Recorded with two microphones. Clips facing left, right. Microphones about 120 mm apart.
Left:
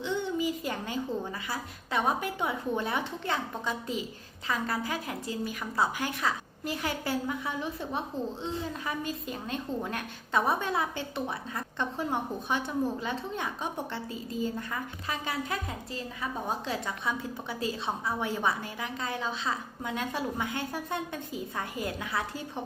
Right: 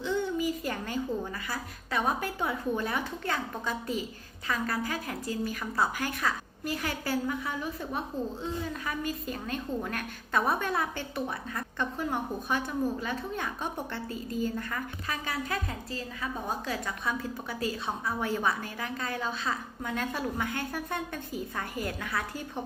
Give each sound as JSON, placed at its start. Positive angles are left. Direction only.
{"t": 0.0, "sound": "a woman's voice", "side_deg": 20}
{"t": 18.2, "sound": "a woman's voice", "side_deg": 20}